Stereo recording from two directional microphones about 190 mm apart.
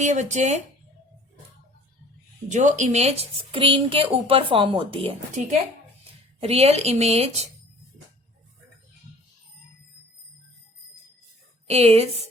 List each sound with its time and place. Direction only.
0.0 s a woman's voice: 40° right (ahead or behind)
2.5 s a woman's voice: 40° right (ahead or behind)
11.7 s a woman's voice: 35° right (ahead or behind)